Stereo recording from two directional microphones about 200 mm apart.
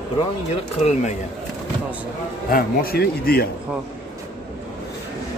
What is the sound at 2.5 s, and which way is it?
Speech, 50° left (ahead or behind).